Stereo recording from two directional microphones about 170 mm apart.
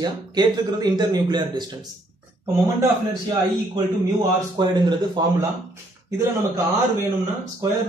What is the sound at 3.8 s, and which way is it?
A man's voice, 25° right (ahead or behind).